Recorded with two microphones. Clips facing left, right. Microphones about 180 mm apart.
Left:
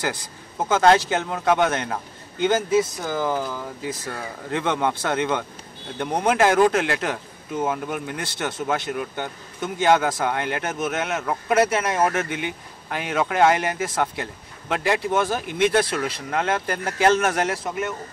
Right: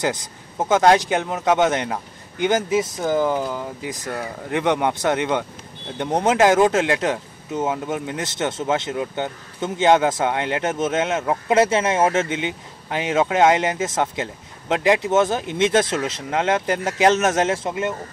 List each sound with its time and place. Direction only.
0.0 s speech: 20° right (ahead or behind)